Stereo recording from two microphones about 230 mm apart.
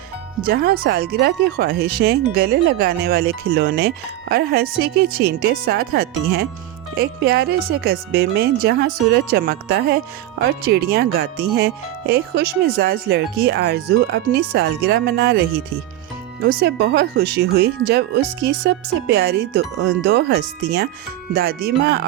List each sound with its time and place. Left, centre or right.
0.4 s speech: right